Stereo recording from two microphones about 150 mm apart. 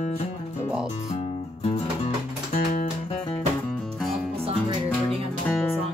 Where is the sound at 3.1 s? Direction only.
35° left (ahead or behind).